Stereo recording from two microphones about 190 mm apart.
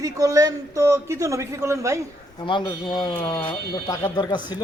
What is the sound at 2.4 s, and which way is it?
Speech, 25° left (ahead or behind).